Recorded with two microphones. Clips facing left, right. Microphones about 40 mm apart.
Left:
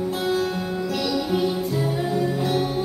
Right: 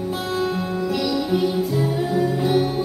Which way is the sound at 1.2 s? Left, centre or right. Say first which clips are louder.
Right 2 dB; centre.